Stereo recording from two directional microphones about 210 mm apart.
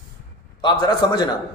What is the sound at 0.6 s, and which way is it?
Speech, 20° left (ahead or behind).